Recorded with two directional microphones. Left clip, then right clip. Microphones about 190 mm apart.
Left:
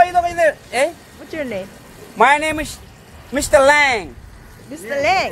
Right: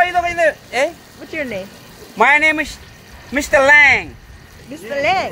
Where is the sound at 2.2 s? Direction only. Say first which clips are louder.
Right 2 dB; 25° left (ahead or behind).